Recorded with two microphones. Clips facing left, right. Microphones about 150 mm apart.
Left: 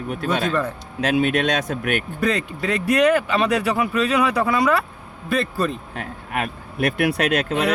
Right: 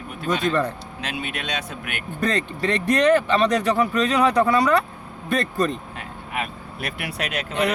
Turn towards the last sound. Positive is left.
turn(degrees=70)  # may be behind; listen again after turning